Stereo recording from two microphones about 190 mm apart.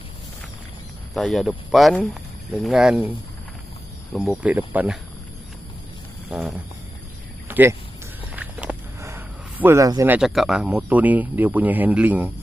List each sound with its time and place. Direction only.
1.1 s speech: centre (ahead or behind)
4.1 s speech: centre (ahead or behind)
7.4 s a sound: 10° right (ahead or behind)
8.4 s speech: 10° right (ahead or behind)